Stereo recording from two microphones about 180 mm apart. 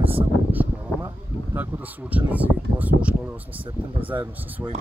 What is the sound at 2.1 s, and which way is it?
Speech, 10° right (ahead or behind).